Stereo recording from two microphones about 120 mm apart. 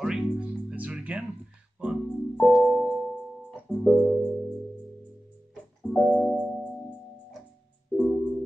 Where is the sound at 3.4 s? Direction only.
15° right (ahead or behind).